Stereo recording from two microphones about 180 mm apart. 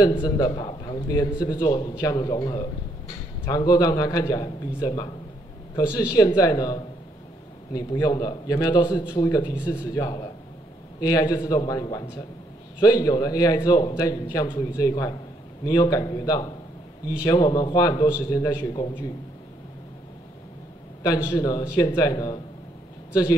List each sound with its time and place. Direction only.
0.0 s a man's voice: 25° left (ahead or behind)
6.1 s a man's voice: 20° left (ahead or behind)
21.0 s a man's voice: 20° left (ahead or behind)